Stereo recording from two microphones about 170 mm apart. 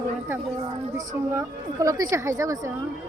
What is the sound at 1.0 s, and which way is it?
A woman's voice, 20° right (ahead or behind).